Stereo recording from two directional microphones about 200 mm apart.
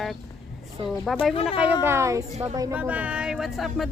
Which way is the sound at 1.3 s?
30° left (ahead or behind).